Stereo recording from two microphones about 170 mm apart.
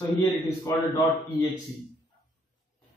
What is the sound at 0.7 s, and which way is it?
Speech, 15° left (ahead or behind).